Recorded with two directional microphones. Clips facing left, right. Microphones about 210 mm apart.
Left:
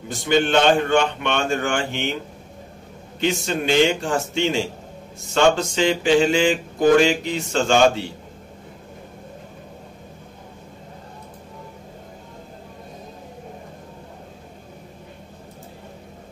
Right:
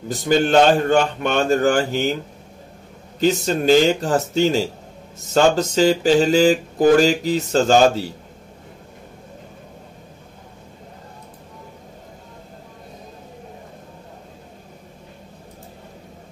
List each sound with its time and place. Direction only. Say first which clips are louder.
0.1 s mantra: right 2 dB; 40° right (ahead or behind)
3.2 s mantra: right 4 dB; 40° right (ahead or behind)